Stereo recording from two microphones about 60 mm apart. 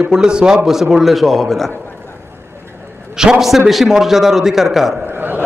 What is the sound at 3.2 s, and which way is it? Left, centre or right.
A man's voice, centre.